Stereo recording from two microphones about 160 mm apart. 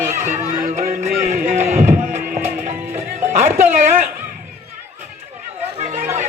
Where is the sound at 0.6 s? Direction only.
55° right (ahead or behind).